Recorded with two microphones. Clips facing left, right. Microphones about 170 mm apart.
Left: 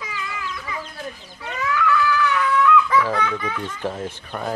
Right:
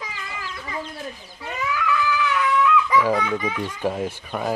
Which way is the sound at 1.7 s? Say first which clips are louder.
Left 3 dB; 15° right (ahead or behind).